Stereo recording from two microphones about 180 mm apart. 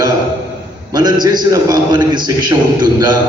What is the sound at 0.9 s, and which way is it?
A man's voice, 25° right (ahead or behind).